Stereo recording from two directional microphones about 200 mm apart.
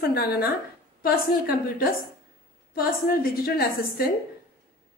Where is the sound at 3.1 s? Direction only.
45° left (ahead or behind).